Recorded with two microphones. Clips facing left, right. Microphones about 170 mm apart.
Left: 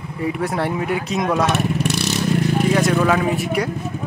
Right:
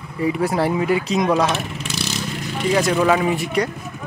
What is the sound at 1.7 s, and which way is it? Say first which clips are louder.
Vehicle: left 6 dB; 65° left (ahead or behind).